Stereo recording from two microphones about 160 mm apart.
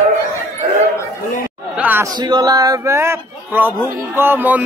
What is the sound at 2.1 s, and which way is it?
Speech, 25° right (ahead or behind).